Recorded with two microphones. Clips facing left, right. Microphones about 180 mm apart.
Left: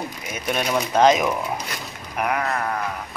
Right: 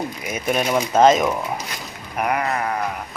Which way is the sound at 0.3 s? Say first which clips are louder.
Right 3 dB; centre (ahead or behind).